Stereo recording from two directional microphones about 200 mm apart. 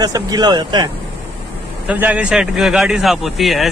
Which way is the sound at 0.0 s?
20° right (ahead or behind).